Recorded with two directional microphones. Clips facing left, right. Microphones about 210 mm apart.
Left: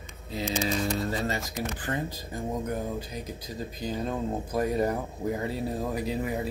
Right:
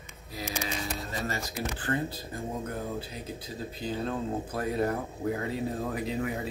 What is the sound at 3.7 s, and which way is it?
Speech, 15° left (ahead or behind).